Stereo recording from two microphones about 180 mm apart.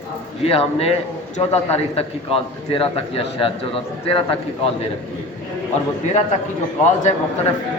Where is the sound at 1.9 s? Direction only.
30° left (ahead or behind).